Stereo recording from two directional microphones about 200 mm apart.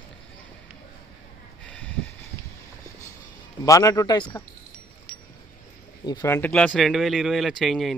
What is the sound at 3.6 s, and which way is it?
Speech, 15° left (ahead or behind).